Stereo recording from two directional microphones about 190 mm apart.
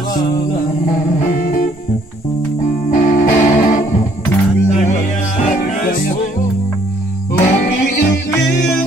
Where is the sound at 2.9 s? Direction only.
45° left (ahead or behind).